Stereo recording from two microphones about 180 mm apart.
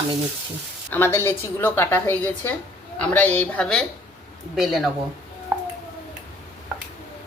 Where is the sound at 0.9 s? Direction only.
10° left (ahead or behind).